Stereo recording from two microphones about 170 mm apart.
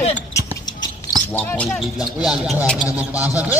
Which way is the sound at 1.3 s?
10° left (ahead or behind).